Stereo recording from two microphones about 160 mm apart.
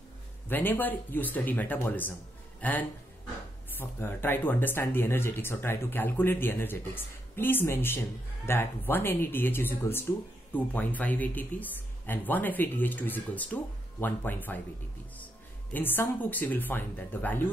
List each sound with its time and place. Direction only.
0.5 s speech: 10° left (ahead or behind)
15.7 s speech: 10° left (ahead or behind)